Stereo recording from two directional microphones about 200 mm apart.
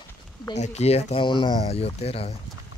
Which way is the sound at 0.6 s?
35° left (ahead or behind).